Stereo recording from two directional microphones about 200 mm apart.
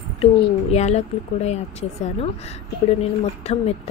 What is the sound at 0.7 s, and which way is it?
Speech, 35° left (ahead or behind).